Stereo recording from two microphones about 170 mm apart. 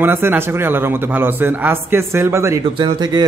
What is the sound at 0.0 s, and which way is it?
A man's voice, 10° right (ahead or behind).